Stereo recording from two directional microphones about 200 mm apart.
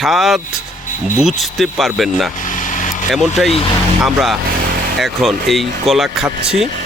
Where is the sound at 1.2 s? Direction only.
Centre (ahead or behind).